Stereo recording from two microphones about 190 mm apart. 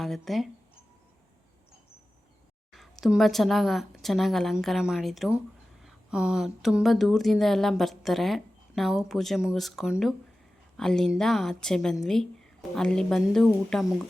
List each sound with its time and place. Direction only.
0.0 s speech: centre (ahead or behind)
2.7 s speech: centre (ahead or behind)